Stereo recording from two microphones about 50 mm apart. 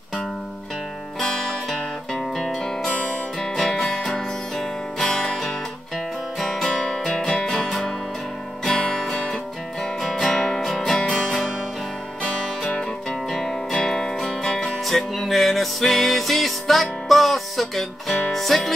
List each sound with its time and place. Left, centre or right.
1.2 s music: centre
2.9 s music: left
3.5 s music: centre
6.7 s music: centre
7.1 s music: centre
10.3 s music: centre
13.3 s music: centre